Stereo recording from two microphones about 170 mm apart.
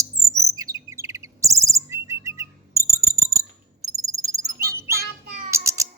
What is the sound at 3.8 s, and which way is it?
Music, 20° right (ahead or behind).